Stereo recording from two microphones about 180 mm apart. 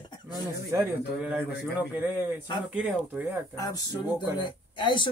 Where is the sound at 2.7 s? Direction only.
10° right (ahead or behind).